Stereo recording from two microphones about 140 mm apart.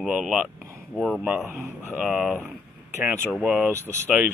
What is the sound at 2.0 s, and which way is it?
Speech, centre (ahead or behind).